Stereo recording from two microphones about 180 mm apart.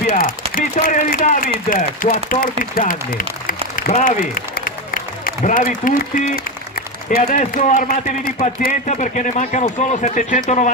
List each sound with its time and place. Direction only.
0.1 s a man's voice: 50° left (ahead or behind)